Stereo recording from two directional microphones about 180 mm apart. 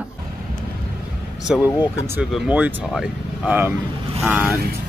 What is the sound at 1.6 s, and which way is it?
Speech, 15° left (ahead or behind).